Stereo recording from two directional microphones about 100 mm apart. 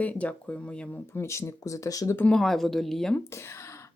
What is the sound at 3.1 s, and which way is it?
Speech, 25° left (ahead or behind).